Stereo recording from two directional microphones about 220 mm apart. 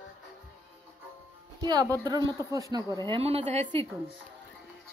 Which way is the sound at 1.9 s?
15° right (ahead or behind).